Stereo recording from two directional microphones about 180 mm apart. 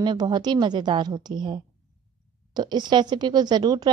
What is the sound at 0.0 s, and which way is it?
A woman's voice, 25° right (ahead or behind).